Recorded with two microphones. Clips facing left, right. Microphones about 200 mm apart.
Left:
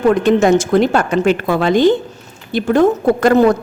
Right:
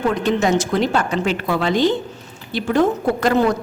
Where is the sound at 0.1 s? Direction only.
50° left (ahead or behind).